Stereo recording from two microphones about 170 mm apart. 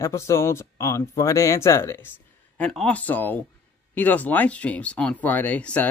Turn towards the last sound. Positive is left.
turn(degrees=10)  # may be behind; listen again after turning